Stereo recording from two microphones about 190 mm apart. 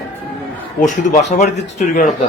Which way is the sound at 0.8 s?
40° left (ahead or behind).